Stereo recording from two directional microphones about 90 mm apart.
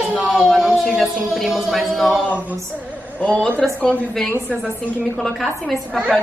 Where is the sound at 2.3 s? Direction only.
20° right (ahead or behind).